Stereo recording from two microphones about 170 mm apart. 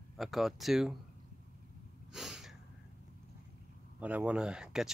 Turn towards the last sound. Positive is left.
turn(degrees=-5)  # may be behind; listen again after turning